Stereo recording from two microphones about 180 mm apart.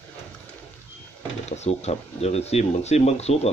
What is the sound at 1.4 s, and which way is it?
Speech, 40° left (ahead or behind).